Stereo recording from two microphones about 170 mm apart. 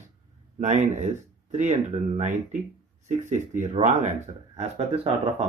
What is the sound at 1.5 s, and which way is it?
Speech, 45° right (ahead or behind).